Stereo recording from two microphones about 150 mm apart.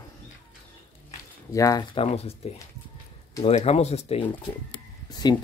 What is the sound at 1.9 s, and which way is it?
Speech, 40° left (ahead or behind).